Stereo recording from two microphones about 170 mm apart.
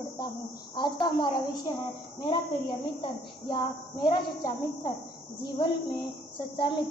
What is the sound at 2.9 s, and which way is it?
A woman's voice, 30° left (ahead or behind).